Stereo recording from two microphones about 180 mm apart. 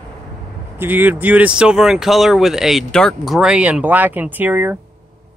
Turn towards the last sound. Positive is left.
turn(degrees=-10)  # may be behind; listen again after turning